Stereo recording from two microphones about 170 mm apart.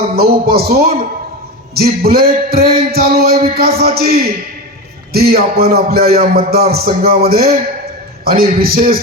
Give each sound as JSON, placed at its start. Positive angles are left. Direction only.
{"t": 0.2, "sound": "music", "side_deg": -65}